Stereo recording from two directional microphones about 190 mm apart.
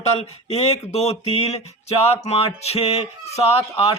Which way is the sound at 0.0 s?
35° left (ahead or behind).